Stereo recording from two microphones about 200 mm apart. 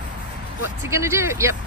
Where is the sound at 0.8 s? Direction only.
15° right (ahead or behind).